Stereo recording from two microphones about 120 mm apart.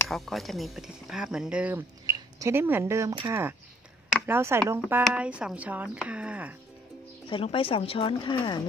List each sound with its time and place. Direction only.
0.1 s speech: centre (ahead or behind)
7.2 s speech: 45° left (ahead or behind)